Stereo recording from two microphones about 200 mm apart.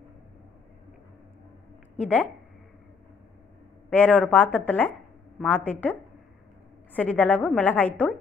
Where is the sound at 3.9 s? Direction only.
5° left (ahead or behind).